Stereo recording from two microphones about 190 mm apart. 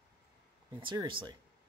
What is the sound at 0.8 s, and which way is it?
Speech, 25° right (ahead or behind).